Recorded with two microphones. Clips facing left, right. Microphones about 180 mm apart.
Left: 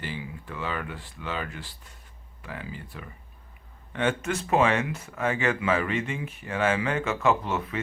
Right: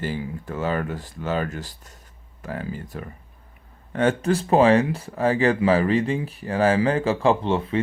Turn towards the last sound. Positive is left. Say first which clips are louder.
# right 6 dB
turn(degrees=-30)  # may be behind; listen again after turning